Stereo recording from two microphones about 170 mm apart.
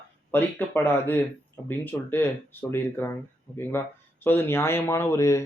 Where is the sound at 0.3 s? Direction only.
10° left (ahead or behind).